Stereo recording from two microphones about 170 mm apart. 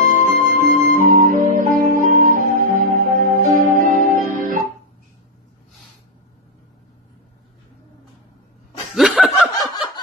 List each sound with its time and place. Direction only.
0.0 s music: 55° right (ahead or behind)
8.9 s snicker: centre (ahead or behind)